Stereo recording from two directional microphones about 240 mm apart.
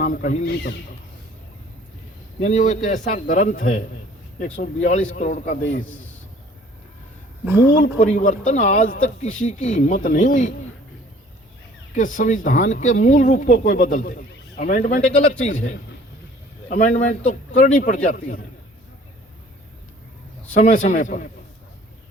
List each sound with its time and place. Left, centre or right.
0.0 s speech: left
2.4 s speech: left
7.8 s speech: left
11.9 s speech: left
16.6 s speech: left
20.5 s speech: left